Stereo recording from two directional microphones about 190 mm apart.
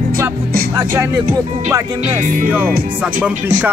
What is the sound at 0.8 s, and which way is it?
Speech, 10° right (ahead or behind).